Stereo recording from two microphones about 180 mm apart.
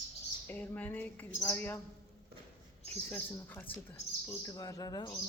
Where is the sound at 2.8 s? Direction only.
10° left (ahead or behind).